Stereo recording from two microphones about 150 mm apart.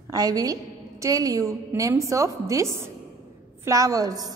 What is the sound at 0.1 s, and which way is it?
A woman's voice, 25° right (ahead or behind).